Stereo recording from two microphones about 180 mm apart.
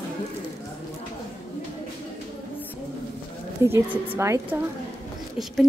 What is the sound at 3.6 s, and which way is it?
A woman's voice, 15° right (ahead or behind).